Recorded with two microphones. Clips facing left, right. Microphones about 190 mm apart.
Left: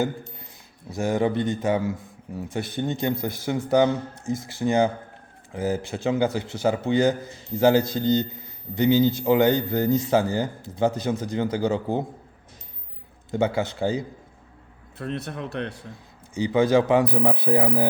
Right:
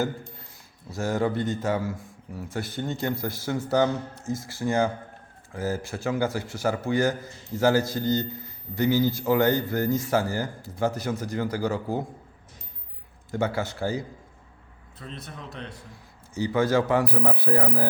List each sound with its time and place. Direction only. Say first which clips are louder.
0.9 s speech: left 3 dB; 15° left (ahead or behind)
13.3 s speech: left 4 dB; 20° left (ahead or behind)
14.9 s speech: left 9 dB; 70° left (ahead or behind)
16.3 s speech: left 4 dB; 15° left (ahead or behind)